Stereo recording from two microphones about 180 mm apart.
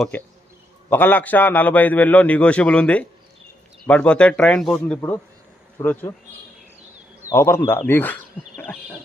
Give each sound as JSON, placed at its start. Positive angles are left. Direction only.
{"t": 0.9, "sound": "a man's voice", "side_deg": 10}
{"t": 7.3, "sound": "speech", "side_deg": 15}